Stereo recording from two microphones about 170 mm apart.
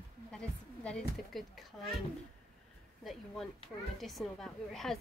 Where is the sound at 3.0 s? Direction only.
Centre (ahead or behind).